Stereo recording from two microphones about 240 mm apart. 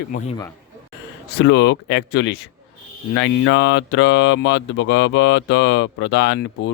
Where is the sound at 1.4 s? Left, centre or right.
Left.